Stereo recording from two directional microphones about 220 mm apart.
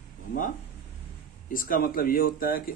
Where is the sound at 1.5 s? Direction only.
40° left (ahead or behind).